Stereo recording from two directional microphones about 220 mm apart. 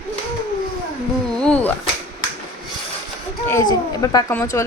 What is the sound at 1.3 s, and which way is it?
Speech, 5° left (ahead or behind).